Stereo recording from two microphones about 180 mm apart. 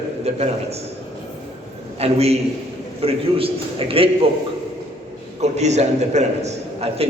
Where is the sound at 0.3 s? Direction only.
35° right (ahead or behind).